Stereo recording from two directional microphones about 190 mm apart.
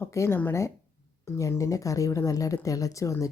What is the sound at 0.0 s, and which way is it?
A woman's voice, 15° left (ahead or behind).